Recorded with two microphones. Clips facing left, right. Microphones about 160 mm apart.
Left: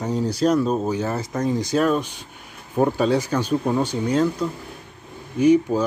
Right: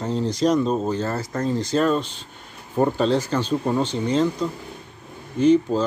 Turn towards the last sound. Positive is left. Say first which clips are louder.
# left 1 dB
turn(degrees=10)  # may be behind; listen again after turning